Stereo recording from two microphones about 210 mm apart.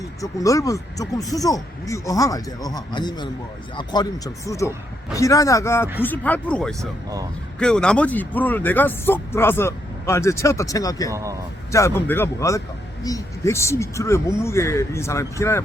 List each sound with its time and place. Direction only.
0.0 s speech: 15° left (ahead or behind)
6.7 s speech: 15° right (ahead or behind)
7.6 s speech: 5° left (ahead or behind)
11.1 s speech: 15° right (ahead or behind)
11.7 s speech: 10° left (ahead or behind)